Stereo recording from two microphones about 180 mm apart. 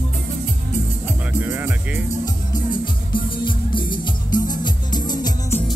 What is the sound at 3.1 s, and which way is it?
Music, 25° left (ahead or behind).